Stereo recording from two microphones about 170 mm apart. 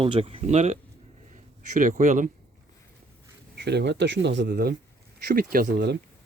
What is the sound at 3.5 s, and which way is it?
Speech, 80° right.